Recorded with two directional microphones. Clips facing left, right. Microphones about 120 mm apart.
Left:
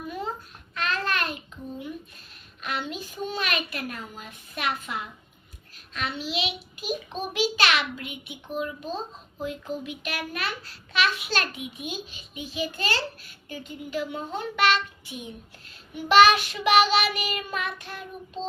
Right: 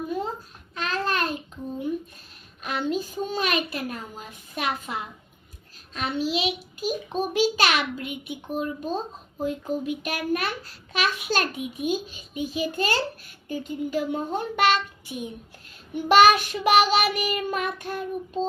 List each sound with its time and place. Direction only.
0.7 s babbling: 35° right (ahead or behind)
2.6 s a child's voice: 40° right (ahead or behind)